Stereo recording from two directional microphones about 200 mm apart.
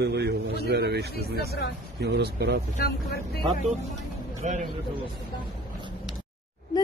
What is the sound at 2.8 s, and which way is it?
Speech, 50° left (ahead or behind).